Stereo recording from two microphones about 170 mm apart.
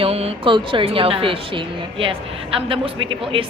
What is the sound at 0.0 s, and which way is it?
A woman's voice, 35° right (ahead or behind).